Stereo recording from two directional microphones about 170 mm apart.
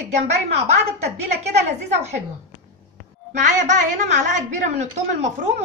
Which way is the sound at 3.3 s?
45° right (ahead or behind).